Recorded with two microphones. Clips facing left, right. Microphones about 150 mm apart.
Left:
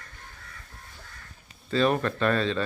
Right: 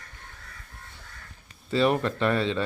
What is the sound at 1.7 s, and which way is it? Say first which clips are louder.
Speech: right 1 dB; 20° right (ahead or behind).